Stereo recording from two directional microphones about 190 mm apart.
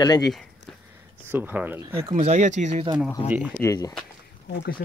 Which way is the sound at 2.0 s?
30° right (ahead or behind).